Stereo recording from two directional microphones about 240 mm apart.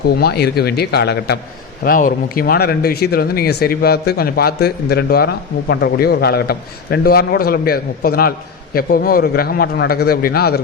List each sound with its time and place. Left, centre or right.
0.2 s speech: left